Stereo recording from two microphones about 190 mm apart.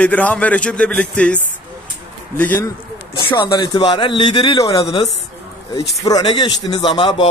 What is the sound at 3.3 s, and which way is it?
Speech, 25° left (ahead or behind).